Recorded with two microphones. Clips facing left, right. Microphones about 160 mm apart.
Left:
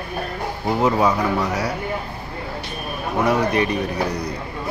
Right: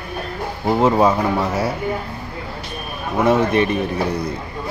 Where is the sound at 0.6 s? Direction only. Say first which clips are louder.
Right 3 dB; 30° right (ahead or behind).